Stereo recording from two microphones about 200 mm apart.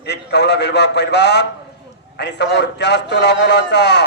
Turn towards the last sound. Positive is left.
turn(degrees=60)  # may be behind; listen again after turning